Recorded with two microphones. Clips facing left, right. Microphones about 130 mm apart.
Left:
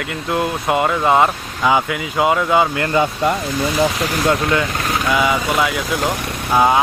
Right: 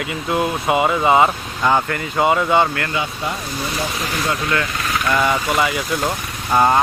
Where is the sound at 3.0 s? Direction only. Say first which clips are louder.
Left 9 dB; 45° left (ahead or behind).